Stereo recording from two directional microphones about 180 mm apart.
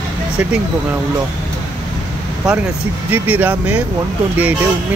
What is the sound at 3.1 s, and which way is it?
Speech, 10° right (ahead or behind).